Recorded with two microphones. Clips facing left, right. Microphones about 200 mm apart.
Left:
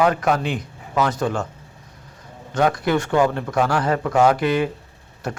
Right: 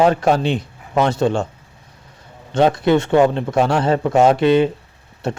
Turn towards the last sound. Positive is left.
turn(degrees=-25)  # may be behind; listen again after turning